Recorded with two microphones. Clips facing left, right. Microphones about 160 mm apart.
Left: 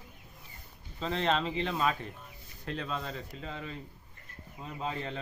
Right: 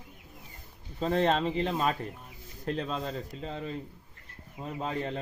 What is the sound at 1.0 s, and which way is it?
Speech, 45° right (ahead or behind).